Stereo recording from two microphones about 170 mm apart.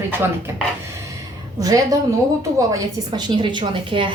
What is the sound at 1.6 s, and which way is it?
A woman's voice, 20° right (ahead or behind).